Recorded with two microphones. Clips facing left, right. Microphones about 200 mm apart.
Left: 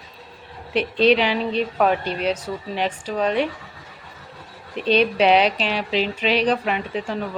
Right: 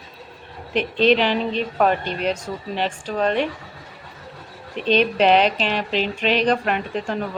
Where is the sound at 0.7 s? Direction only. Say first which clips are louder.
Left 1 dB; 40° left (ahead or behind).